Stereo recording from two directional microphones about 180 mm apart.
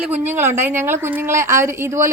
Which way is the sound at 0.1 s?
10° right (ahead or behind).